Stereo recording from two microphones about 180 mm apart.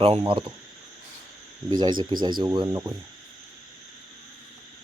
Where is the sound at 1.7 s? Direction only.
25° right (ahead or behind).